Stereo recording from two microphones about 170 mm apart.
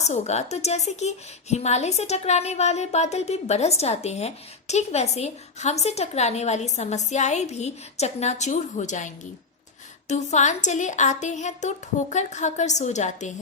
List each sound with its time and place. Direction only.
0.0 s a woman's voice: 40° left (ahead or behind)
10.1 s a woman's voice: 45° left (ahead or behind)